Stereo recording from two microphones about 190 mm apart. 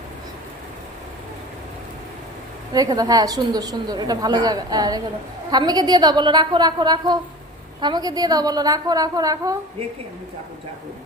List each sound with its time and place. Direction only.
2.7 s a woman's voice: 20° right (ahead or behind)